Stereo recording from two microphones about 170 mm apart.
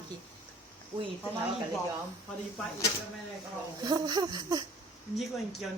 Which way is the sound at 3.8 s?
25° right (ahead or behind).